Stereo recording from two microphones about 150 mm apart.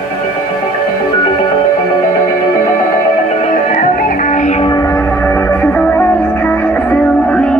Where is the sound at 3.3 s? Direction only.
50° left (ahead or behind).